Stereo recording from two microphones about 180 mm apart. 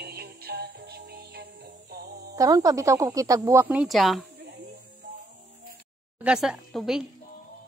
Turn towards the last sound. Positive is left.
turn(degrees=0)  # may be behind; listen again after turning